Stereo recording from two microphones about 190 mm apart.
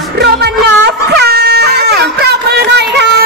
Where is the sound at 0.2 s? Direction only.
60° right (ahead or behind).